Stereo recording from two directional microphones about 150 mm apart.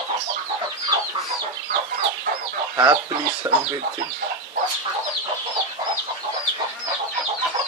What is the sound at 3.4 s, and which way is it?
Speech, 25° right (ahead or behind).